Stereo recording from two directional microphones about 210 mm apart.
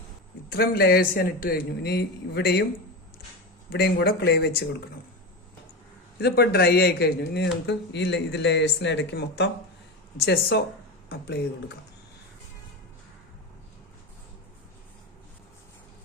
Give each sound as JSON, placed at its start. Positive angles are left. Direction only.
{"t": 0.5, "sound": "a man's voice", "side_deg": 45}
{"t": 3.7, "sound": "a man's voice", "side_deg": 50}
{"t": 6.1, "sound": "a man's voice", "side_deg": 50}